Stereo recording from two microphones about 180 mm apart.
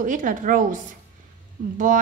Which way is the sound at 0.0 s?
45° right (ahead or behind).